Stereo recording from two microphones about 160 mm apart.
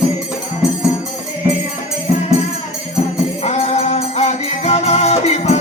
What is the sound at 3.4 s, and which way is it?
Music, 45° left (ahead or behind).